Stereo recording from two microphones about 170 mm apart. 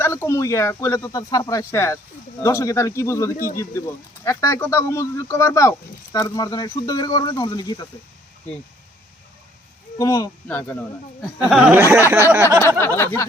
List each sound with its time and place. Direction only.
0.0 s speech: 15° left (ahead or behind)
10.0 s speech: 20° left (ahead or behind)
11.4 s speech: centre (ahead or behind)
11.8 s speech: 15° right (ahead or behind)
13.0 s speech: 15° left (ahead or behind)